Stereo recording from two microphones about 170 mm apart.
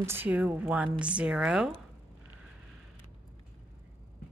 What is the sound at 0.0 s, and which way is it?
A woman's voice, 15° right (ahead or behind).